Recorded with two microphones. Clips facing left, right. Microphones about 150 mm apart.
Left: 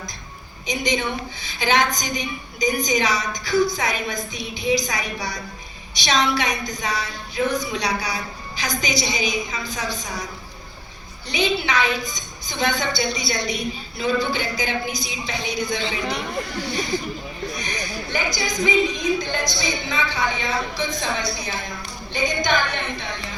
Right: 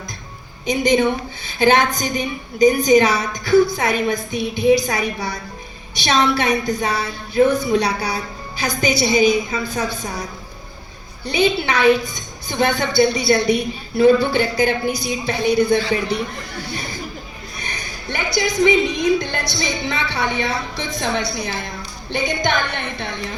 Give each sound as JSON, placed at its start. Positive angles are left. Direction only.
{"t": 0.7, "sound": "a woman's voice", "side_deg": -55}
{"t": 11.3, "sound": "a woman's voice", "side_deg": -55}
{"t": 18.1, "sound": "a woman's voice", "side_deg": -65}